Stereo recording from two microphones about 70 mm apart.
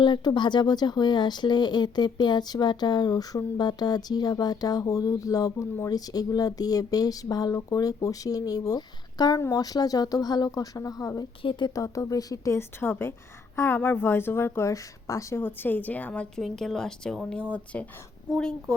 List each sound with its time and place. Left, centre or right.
0.0 s speech: left
12.5 s speech: left
14.7 s speech: left
15.4 s a woman's voice: left
16.3 s speech: centre
17.5 s a woman's voice: centre